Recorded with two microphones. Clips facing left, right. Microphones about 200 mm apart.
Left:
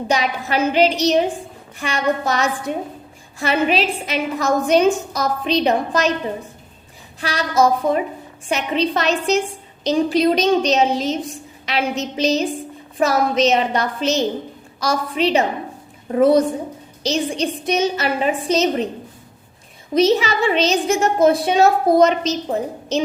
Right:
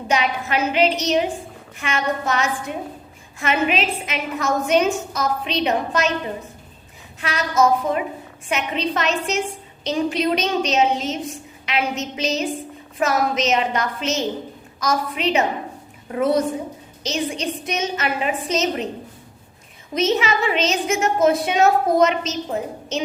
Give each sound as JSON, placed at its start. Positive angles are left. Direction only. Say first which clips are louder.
{"t": 0.1, "sound": "a woman's voice", "louder": "even", "side_deg": 35}
{"t": 7.2, "sound": "a woman's voice", "louder": "left 2 dB", "side_deg": 35}
{"t": 19.9, "sound": "a woman's voice", "louder": "left 4 dB", "side_deg": 35}